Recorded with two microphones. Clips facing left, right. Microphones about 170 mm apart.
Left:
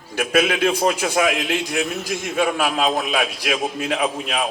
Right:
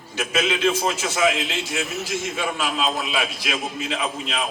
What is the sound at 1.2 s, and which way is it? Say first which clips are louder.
Speech: right 1 dB; 55° left (ahead or behind).